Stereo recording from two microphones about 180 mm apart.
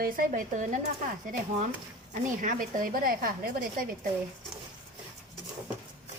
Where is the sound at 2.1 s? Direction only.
45° right (ahead or behind).